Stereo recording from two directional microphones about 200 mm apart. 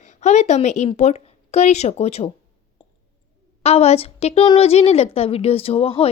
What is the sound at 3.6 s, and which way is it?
A woman's voice, 30° left (ahead or behind).